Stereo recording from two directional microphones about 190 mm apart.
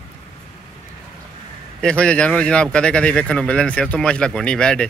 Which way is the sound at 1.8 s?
5° left (ahead or behind).